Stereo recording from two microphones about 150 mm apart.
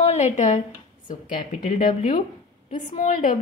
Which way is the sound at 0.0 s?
50° left (ahead or behind).